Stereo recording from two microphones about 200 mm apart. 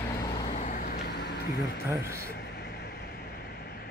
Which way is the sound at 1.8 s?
15° right (ahead or behind).